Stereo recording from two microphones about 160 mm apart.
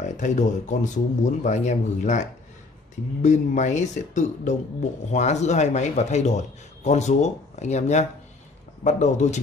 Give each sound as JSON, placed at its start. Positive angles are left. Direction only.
{"t": 0.0, "sound": "speech", "side_deg": 50}